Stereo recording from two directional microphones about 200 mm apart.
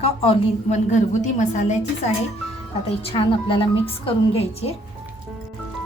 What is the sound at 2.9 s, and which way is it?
A woman's voice, 30° left (ahead or behind).